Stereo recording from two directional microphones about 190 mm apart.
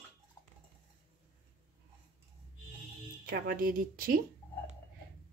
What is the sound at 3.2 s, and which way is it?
Speech, 45° right (ahead or behind).